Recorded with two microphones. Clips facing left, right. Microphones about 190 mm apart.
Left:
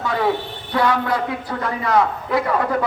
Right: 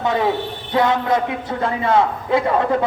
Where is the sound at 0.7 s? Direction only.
20° right (ahead or behind).